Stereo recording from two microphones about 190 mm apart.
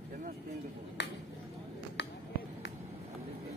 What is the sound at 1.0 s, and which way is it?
Finger snapping, 65° left (ahead or behind).